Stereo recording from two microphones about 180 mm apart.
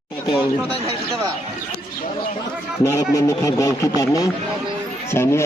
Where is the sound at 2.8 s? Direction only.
20° left (ahead or behind).